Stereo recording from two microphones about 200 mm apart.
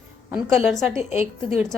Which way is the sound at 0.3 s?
Centre (ahead or behind).